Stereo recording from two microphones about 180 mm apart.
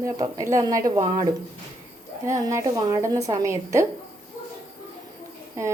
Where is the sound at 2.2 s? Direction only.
15° right (ahead or behind).